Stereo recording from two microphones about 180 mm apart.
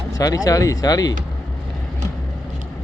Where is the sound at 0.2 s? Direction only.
20° left (ahead or behind).